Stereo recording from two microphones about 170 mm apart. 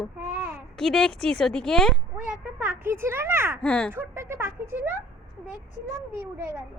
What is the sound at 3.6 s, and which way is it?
Speech, 5° left (ahead or behind).